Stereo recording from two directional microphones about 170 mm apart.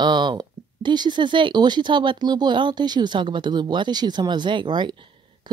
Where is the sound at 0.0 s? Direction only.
25° right (ahead or behind).